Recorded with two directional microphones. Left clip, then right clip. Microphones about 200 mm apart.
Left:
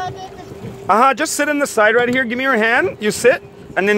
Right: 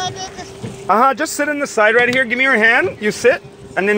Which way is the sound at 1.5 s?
40° left (ahead or behind).